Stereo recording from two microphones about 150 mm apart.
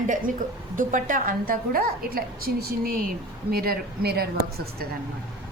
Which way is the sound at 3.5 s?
90° right.